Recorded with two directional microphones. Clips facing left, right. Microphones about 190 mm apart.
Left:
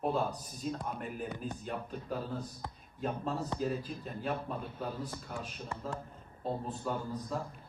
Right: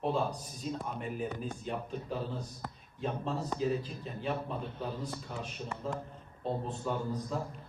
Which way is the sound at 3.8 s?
50° left (ahead or behind).